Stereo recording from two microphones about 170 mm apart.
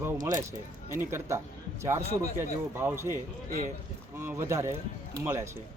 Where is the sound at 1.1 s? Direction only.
15° right (ahead or behind).